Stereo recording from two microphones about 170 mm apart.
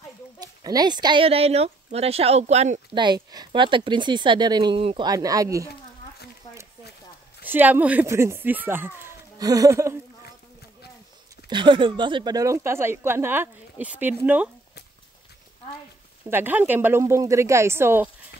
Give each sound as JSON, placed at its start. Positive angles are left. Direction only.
{"t": 0.4, "sound": "speech", "side_deg": -25}
{"t": 2.9, "sound": "speech", "side_deg": -25}
{"t": 7.4, "sound": "speech", "side_deg": -10}
{"t": 11.4, "sound": "speech", "side_deg": -30}
{"t": 16.3, "sound": "speech", "side_deg": -10}